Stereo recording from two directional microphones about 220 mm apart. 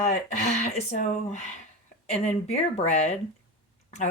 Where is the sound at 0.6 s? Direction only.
30° left (ahead or behind).